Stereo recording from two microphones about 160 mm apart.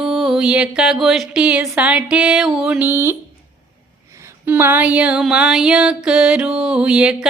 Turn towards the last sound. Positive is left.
turn(degrees=-5)  # may be behind; listen again after turning